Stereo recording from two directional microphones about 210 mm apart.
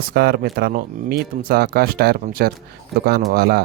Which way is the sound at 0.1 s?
45° right (ahead or behind).